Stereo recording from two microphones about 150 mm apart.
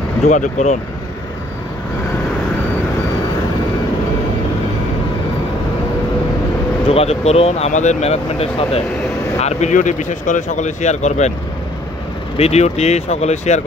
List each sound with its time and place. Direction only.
0.2 s speech: 50° left (ahead or behind)
6.9 s speech: 40° left (ahead or behind)
12.4 s speech: 45° left (ahead or behind)